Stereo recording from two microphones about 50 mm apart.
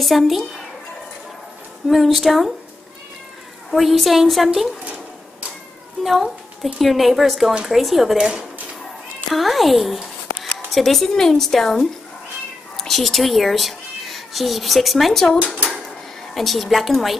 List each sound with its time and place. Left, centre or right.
0.0 s a woman's voice: centre
1.9 s a woman's voice: centre
3.7 s a woman's voice: centre
6.0 s a woman's voice: centre
8.2 s speech: centre
9.3 s a woman's voice: centre
16.3 s a woman's voice: centre